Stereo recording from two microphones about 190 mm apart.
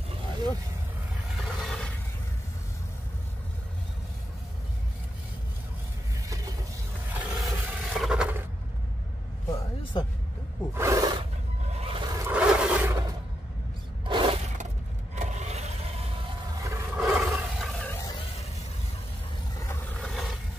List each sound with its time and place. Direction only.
1.3 s a sound: centre (ahead or behind)
7.1 s roar: 5° right (ahead or behind)
10.7 s wild animals: 15° right (ahead or behind)
11.7 s a sound: 30° right (ahead or behind)
12.1 s roar: 10° right (ahead or behind)
14.0 s a sound: 25° right (ahead or behind)
15.1 s vehicle: 35° right (ahead or behind)
16.5 s roar: 15° right (ahead or behind)
16.9 s roar: centre (ahead or behind)
19.6 s vehicle: 10° left (ahead or behind)